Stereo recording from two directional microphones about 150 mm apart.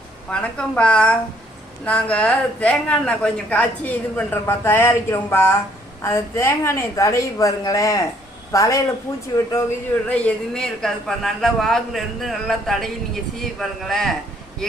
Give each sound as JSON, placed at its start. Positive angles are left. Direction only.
{"t": 0.3, "sound": "a woman's voice", "side_deg": 10}
{"t": 10.1, "sound": "a man's voice", "side_deg": 5}